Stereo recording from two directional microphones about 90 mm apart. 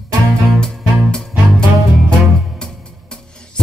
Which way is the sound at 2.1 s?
10° left (ahead or behind).